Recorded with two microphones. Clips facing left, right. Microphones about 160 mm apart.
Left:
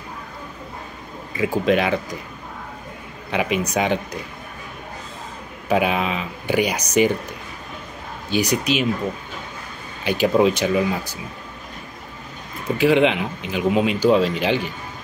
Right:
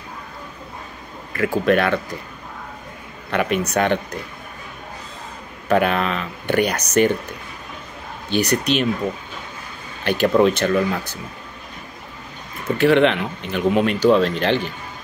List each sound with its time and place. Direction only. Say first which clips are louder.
1.3 s speech: right 1 dB; 15° left (ahead or behind)
3.3 s speech: right 1 dB; 10° left (ahead or behind)
5.7 s speech: right 2 dB; 10° left (ahead or behind)
8.3 s speech: right 1 dB; 10° left (ahead or behind)
10.0 s speech: right 1 dB; 10° left (ahead or behind)
12.6 s speech: right 1 dB; 10° left (ahead or behind)